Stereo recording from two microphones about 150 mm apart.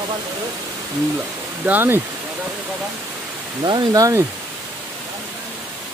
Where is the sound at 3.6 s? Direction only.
25° right (ahead or behind).